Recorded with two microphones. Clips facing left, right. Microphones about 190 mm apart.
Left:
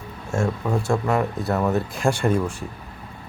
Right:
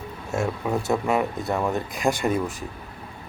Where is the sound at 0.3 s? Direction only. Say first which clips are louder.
Left 2 dB; 5° right (ahead or behind).